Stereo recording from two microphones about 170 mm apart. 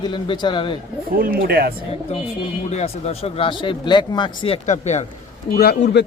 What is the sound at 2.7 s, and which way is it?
Speech, 40° left (ahead or behind).